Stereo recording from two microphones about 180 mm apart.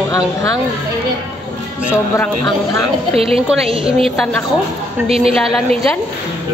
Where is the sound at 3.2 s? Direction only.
30° right (ahead or behind).